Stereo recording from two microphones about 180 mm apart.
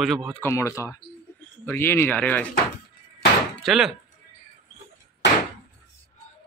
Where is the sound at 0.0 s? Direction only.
Centre (ahead or behind).